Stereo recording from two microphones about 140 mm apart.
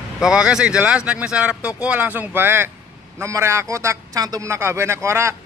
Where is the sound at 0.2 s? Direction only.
5° right (ahead or behind).